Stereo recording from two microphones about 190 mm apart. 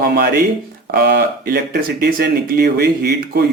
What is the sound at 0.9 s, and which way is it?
Speech, 55° right (ahead or behind).